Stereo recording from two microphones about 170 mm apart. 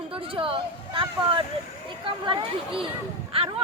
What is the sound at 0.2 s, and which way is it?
Speech, 30° right (ahead or behind).